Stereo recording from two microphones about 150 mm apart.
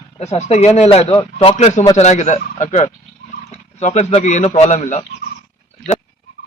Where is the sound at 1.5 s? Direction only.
55° left (ahead or behind).